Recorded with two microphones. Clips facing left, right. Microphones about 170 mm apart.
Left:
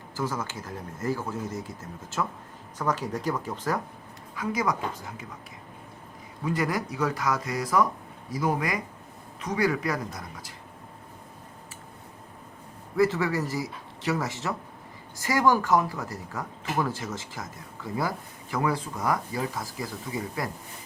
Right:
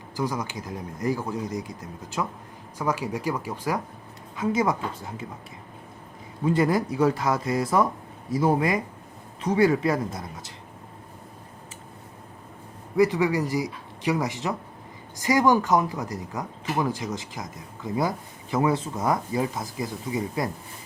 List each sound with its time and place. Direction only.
0.2 s speech: 15° right (ahead or behind)
4.4 s speech: 25° right (ahead or behind)
6.4 s speech: 30° right (ahead or behind)
13.0 s speech: 15° right (ahead or behind)